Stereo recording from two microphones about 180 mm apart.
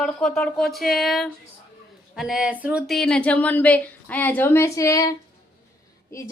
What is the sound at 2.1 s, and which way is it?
Speech, 5° right (ahead or behind).